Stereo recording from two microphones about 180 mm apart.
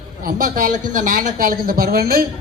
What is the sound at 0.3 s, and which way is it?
A man's voice, 50° right (ahead or behind).